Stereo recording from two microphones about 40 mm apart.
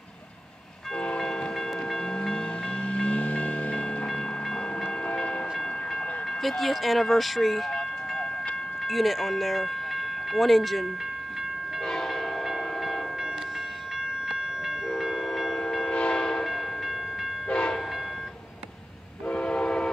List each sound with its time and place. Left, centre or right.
0.9 s train: left
6.4 s speech: centre
8.8 s speech: centre
11.8 s train: centre
14.2 s train: centre
15.0 s train: centre
15.9 s train: left
16.4 s train: centre
17.5 s train: left
19.3 s train: left